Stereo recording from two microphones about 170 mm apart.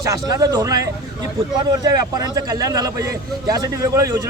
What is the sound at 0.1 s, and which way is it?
Speech, 20° right (ahead or behind).